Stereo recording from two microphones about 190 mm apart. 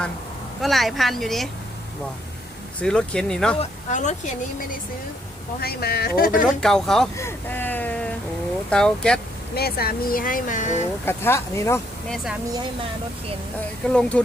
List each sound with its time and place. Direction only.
0.6 s speech: centre (ahead or behind)
2.8 s speech: 5° left (ahead or behind)
3.6 s speech: 40° left (ahead or behind)
5.5 s speech: 55° left (ahead or behind)
6.6 s speech: 5° left (ahead or behind)
9.6 s speech: 55° left (ahead or behind)
11.0 s speech: 10° left (ahead or behind)
12.0 s speech: centre (ahead or behind)
13.8 s speech: 5° left (ahead or behind)